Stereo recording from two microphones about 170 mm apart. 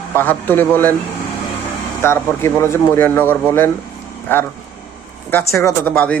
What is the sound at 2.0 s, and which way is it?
Speech, 15° left (ahead or behind).